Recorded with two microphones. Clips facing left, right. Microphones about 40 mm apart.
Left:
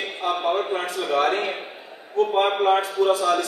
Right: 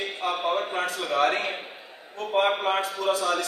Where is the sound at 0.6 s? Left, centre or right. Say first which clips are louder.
Left 3 dB; left.